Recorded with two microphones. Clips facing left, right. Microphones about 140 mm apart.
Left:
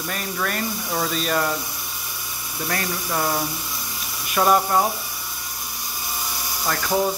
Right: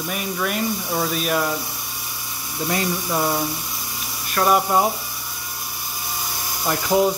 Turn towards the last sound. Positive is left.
turn(degrees=-15)  # may be behind; listen again after turning